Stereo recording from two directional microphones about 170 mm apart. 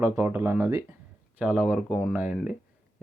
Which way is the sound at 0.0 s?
10° right (ahead or behind).